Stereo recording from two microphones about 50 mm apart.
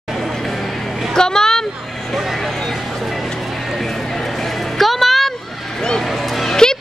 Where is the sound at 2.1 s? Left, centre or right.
Centre.